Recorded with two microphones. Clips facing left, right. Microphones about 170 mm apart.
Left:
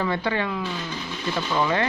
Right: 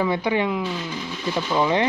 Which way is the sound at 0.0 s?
15° right (ahead or behind).